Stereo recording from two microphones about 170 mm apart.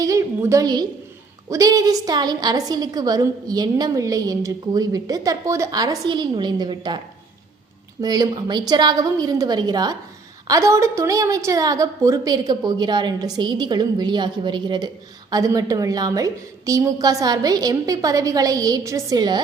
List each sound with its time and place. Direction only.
0.0 s a woman's voice: 20° right (ahead or behind)
8.0 s a woman's voice: 20° right (ahead or behind)